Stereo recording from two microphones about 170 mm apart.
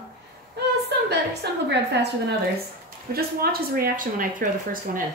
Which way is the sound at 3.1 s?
65° right (ahead or behind).